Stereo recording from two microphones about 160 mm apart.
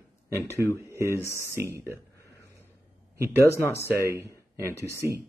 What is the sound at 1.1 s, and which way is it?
Speech, 15° left (ahead or behind).